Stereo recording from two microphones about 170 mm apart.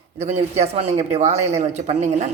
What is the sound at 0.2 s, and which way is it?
Speech, 35° right (ahead or behind).